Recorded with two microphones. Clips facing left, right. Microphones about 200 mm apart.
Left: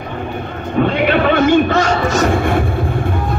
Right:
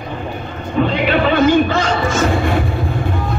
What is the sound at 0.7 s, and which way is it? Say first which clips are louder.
Speech: left 1 dB; 55° left (ahead or behind).